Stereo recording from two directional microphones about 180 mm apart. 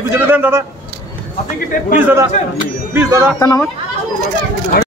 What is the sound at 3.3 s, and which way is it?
Speech, 15° left (ahead or behind).